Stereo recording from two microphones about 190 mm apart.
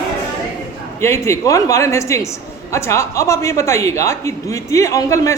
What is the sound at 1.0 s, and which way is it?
Speech, 15° left (ahead or behind).